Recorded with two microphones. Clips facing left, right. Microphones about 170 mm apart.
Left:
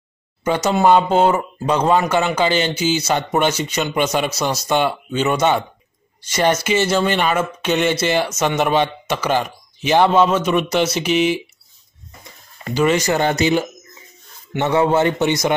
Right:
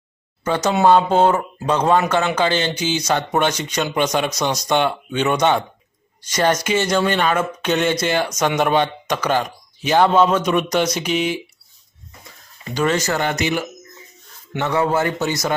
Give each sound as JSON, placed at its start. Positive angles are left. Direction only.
{"t": 0.4, "sound": "speech", "side_deg": 10}
{"t": 12.7, "sound": "speech", "side_deg": 10}
{"t": 13.2, "sound": "a man's voice", "side_deg": 30}
{"t": 14.7, "sound": "a man's voice", "side_deg": 25}